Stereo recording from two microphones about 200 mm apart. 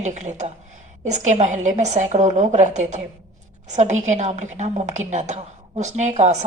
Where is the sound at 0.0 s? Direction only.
35° right (ahead or behind).